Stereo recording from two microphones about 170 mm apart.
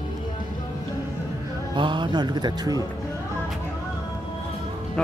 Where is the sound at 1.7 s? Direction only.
25° right (ahead or behind).